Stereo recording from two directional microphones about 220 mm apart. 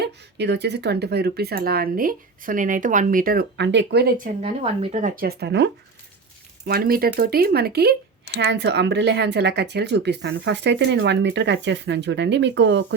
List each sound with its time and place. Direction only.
0.0 s speech: 50° right (ahead or behind)
4.4 s speech: 25° right (ahead or behind); by 12.8 s 55° right (ahead or behind)